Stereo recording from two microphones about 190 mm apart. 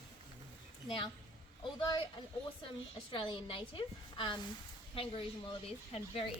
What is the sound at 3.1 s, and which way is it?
A woman's voice, 25° left (ahead or behind).